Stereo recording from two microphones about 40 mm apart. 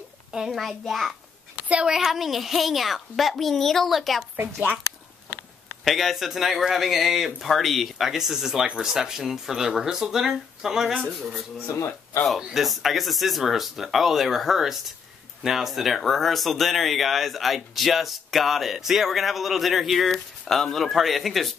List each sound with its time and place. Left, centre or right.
0.5 s speech: centre
1.6 s a sound: right
1.9 s speech: centre
5.9 s speech: centre
8.1 s speech: centre
12.5 s speech: centre